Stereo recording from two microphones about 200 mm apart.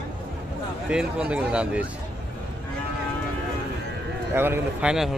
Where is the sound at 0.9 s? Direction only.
5° right (ahead or behind).